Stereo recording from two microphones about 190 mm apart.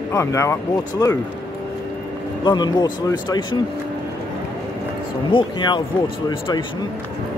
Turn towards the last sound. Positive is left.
turn(degrees=25)  # may be behind; listen again after turning